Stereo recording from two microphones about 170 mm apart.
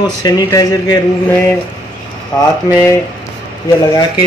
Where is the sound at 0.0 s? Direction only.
25° left (ahead or behind).